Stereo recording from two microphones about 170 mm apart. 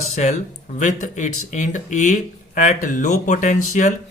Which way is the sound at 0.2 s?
40° left (ahead or behind).